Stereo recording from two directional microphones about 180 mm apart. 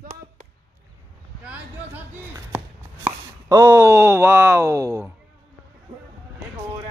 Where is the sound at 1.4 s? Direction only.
10° right (ahead or behind).